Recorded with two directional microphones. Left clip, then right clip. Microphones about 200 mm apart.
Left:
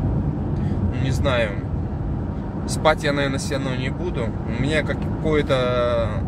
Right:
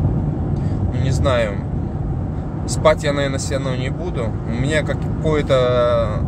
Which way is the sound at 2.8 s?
10° right (ahead or behind).